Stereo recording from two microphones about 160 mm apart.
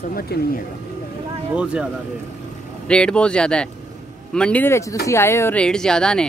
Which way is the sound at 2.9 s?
5° left (ahead or behind).